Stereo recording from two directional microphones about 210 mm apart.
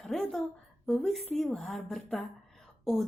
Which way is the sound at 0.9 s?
Centre (ahead or behind).